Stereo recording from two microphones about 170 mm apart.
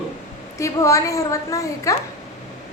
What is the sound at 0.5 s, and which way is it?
A woman's voice, 20° left (ahead or behind).